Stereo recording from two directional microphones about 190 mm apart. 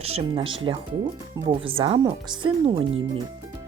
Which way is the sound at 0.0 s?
30° right (ahead or behind).